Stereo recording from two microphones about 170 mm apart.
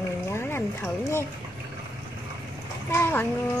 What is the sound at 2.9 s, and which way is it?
Speech, 15° left (ahead or behind).